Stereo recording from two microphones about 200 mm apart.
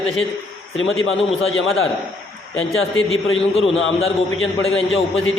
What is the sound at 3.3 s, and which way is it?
Speech, 30° left (ahead or behind).